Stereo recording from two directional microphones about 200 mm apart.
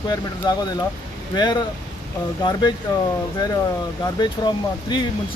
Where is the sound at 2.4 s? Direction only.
20° left (ahead or behind).